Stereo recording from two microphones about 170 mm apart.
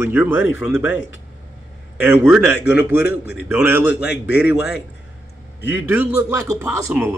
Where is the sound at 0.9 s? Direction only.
90° left.